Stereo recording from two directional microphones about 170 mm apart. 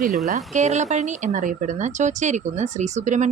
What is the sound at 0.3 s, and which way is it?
A woman's voice, 40° right (ahead or behind).